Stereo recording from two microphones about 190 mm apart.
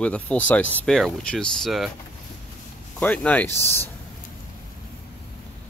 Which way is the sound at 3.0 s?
10° left (ahead or behind).